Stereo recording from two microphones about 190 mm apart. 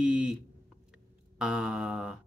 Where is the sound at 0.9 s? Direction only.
5° right (ahead or behind).